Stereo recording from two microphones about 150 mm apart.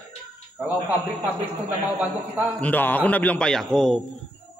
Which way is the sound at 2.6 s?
10° left (ahead or behind).